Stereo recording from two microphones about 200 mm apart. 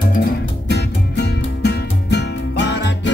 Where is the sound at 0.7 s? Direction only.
55° left (ahead or behind).